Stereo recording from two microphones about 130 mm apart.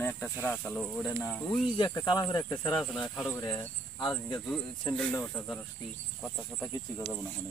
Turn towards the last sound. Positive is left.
turn(degrees=5)  # may be behind; listen again after turning